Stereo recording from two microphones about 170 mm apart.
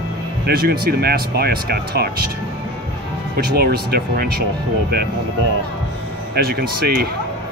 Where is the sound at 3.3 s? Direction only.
65° right (ahead or behind).